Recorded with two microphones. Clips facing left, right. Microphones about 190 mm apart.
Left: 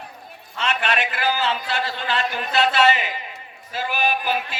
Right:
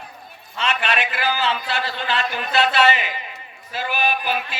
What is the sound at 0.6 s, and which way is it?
A man's voice, 50° left (ahead or behind).